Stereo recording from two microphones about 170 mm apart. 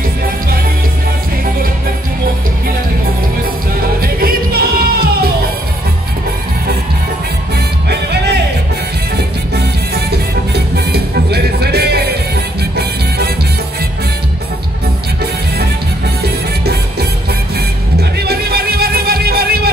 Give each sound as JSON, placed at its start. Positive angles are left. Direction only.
{"t": 4.0, "sound": "music", "side_deg": -60}
{"t": 7.9, "sound": "music", "side_deg": -75}
{"t": 9.6, "sound": "music", "side_deg": -75}
{"t": 18.2, "sound": "music", "side_deg": -70}